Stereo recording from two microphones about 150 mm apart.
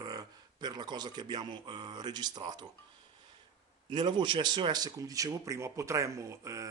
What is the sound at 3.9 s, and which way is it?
Speech, 30° right (ahead or behind).